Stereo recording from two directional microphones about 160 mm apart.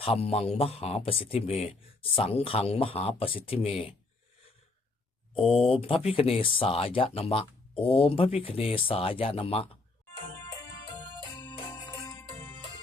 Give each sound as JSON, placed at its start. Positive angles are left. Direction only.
{"t": 0.0, "sound": "speech", "side_deg": 35}
{"t": 5.5, "sound": "speech", "side_deg": 35}
{"t": 11.9, "sound": "music", "side_deg": 25}